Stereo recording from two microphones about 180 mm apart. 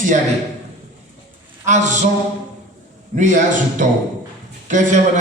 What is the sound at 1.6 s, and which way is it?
Speech, 40° right (ahead or behind).